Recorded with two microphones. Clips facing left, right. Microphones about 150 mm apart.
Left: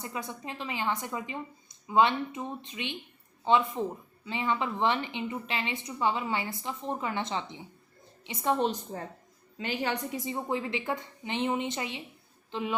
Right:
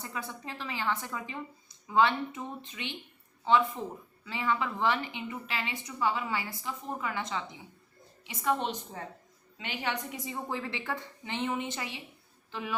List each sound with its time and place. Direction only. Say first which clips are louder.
0.0 s a woman's voice: left 2 dB; 15° left (ahead or behind)
8.9 s a woman's voice: left 3 dB; 40° left (ahead or behind)
10.2 s a woman's voice: left 4 dB; 20° left (ahead or behind)